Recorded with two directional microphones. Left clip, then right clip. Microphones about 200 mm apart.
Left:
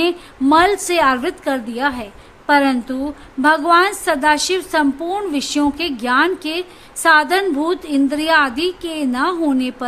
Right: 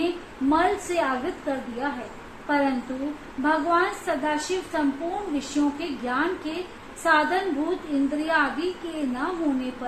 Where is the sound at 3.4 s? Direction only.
60° left (ahead or behind).